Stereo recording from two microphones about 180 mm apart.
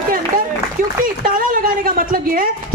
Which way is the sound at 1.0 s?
50° right (ahead or behind).